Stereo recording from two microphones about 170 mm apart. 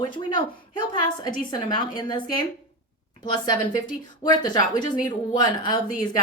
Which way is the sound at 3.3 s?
25° left (ahead or behind).